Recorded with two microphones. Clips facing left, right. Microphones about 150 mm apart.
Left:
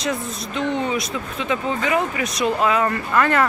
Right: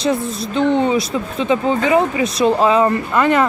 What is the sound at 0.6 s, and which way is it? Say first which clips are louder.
Speech: right 7 dB; 30° right (ahead or behind).